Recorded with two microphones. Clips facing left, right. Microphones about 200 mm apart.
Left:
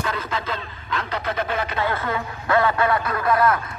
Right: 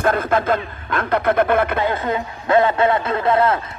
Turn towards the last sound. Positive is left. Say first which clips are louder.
# right 3 dB
turn(degrees=-25)  # may be behind; listen again after turning